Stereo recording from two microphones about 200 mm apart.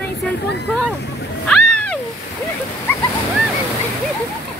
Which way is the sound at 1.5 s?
5° left (ahead or behind).